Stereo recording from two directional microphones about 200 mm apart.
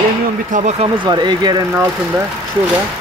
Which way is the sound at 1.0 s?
20° right (ahead or behind).